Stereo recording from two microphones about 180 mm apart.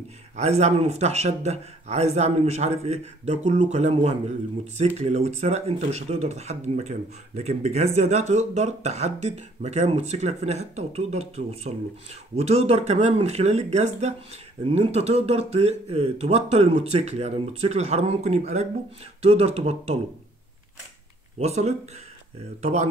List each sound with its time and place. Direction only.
0.4 s speech: 40° right (ahead or behind)
21.4 s speech: 40° right (ahead or behind)